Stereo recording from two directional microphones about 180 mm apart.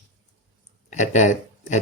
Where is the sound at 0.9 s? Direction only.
40° left (ahead or behind).